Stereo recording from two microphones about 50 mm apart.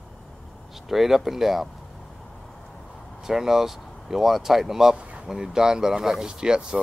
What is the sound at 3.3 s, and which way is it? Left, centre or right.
Speech, centre.